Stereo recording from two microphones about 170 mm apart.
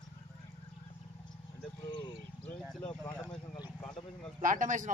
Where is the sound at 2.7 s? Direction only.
Centre (ahead or behind).